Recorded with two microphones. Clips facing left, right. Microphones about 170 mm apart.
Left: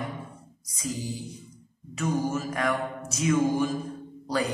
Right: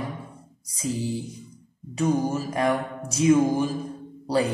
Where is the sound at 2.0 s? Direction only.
30° right (ahead or behind).